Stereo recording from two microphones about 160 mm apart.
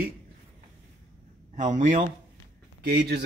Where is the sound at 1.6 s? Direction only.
50° right (ahead or behind).